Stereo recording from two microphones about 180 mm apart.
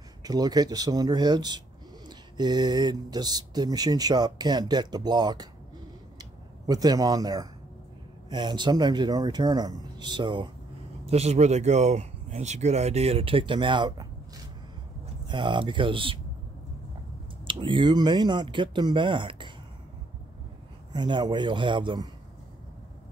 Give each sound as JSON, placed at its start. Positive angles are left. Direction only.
{"t": 0.2, "sound": "speech", "side_deg": -20}
{"t": 6.7, "sound": "speech", "side_deg": -20}
{"t": 11.1, "sound": "speech", "side_deg": -35}
{"t": 17.5, "sound": "speech", "side_deg": -25}
{"t": 20.9, "sound": "speech", "side_deg": -25}